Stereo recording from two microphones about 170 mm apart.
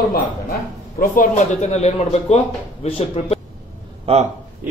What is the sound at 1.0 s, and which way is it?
Speech, 50° left (ahead or behind).